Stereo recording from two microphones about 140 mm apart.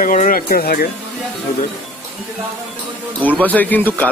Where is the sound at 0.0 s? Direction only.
70° left (ahead or behind); by 0.8 s 90° left.